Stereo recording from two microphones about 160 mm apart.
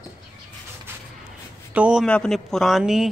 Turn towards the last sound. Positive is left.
turn(degrees=0)  # may be behind; listen again after turning